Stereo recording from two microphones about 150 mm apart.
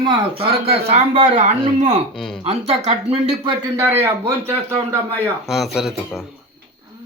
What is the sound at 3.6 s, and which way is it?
Speech, 25° right (ahead or behind).